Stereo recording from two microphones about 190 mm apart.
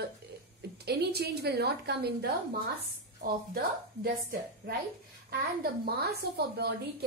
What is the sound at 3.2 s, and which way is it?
A woman's voice, 50° right (ahead or behind).